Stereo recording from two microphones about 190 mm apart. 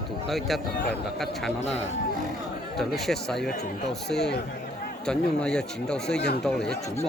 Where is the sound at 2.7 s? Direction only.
Centre (ahead or behind).